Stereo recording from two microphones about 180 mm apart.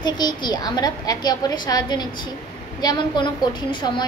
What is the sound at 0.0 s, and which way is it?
A woman's voice, 25° left (ahead or behind).